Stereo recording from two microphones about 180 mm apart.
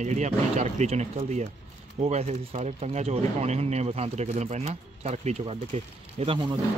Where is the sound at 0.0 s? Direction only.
40° right (ahead or behind).